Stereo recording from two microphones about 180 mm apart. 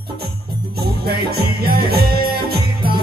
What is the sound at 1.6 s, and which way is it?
Music, 60° right (ahead or behind).